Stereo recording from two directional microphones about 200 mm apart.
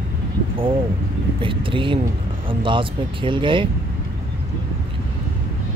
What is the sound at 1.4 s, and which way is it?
Speech, 25° right (ahead or behind).